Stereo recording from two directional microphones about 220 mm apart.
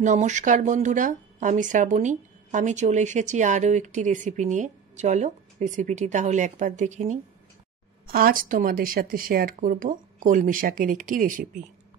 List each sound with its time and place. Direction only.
0.0 s speech: 35° right (ahead or behind)